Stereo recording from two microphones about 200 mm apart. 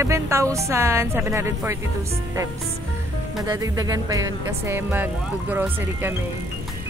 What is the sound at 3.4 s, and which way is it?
Speech, 20° right (ahead or behind).